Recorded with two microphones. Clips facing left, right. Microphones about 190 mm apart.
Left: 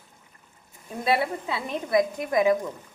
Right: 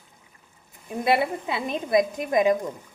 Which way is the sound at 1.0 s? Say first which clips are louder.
Right 2 dB; 20° right (ahead or behind).